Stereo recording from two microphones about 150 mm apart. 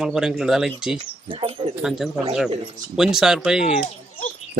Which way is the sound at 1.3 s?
35° right (ahead or behind).